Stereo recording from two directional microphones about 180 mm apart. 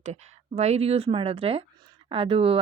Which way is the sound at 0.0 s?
40° right (ahead or behind).